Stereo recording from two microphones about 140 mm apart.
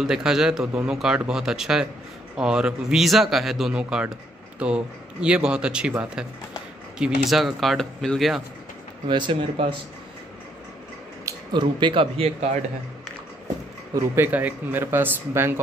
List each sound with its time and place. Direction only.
0.0 s speech: 5° right (ahead or behind)
9.0 s speech: 35° right (ahead or behind)
11.2 s speech: 35° right (ahead or behind)
13.9 s speech: 15° right (ahead or behind)